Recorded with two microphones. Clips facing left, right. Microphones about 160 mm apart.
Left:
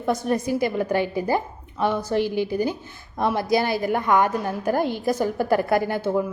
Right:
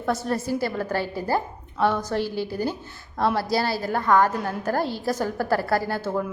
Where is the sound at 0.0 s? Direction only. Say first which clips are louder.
Left 3 dB; 15° left (ahead or behind).